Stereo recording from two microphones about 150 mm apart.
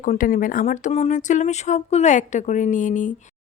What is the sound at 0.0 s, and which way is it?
Speech, 60° left (ahead or behind).